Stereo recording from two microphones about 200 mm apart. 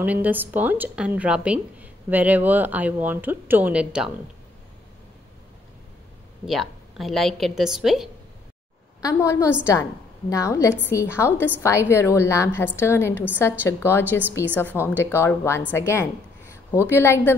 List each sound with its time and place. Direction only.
0.0 s a woman's voice: 10° right (ahead or behind)
6.4 s a woman's voice: centre (ahead or behind)
9.0 s a woman's voice: 15° left (ahead or behind)